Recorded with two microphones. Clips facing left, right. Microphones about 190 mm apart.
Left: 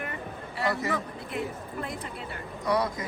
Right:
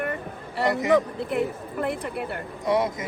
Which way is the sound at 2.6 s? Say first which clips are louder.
Right 4 dB; 20° right (ahead or behind).